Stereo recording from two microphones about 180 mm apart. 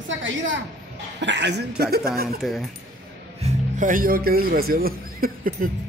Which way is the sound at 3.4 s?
45° right (ahead or behind).